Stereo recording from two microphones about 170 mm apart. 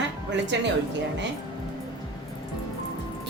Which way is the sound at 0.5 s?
90° right.